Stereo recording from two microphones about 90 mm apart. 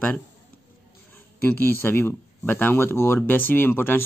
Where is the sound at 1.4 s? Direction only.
25° left (ahead or behind).